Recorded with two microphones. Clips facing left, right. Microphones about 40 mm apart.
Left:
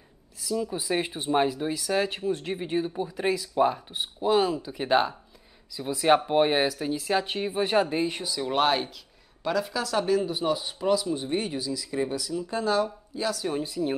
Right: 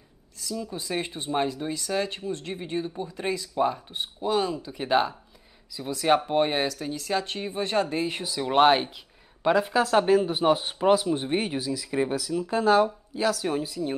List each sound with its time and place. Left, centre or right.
0.4 s speech: centre
8.0 s speech: centre
9.4 s speech: right
11.2 s speech: right
12.2 s speech: centre
13.6 s a woman's voice: centre